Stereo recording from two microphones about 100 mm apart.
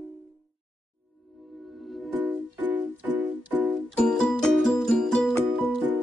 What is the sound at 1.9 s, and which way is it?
Music, centre (ahead or behind).